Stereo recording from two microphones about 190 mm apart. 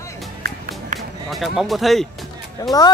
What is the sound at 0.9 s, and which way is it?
Music, 40° right (ahead or behind).